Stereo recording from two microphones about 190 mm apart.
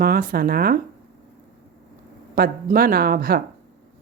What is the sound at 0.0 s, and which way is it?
Speech, 50° right (ahead or behind).